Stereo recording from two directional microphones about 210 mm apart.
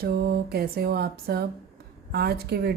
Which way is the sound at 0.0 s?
45° right (ahead or behind).